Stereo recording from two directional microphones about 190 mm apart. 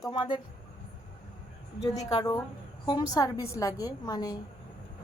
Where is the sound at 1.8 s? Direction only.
20° left (ahead or behind).